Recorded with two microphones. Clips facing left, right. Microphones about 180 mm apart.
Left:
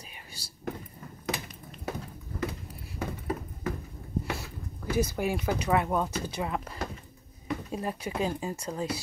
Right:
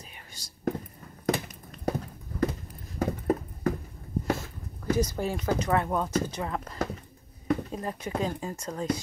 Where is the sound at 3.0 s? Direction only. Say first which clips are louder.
Right 7 dB; 40° right (ahead or behind).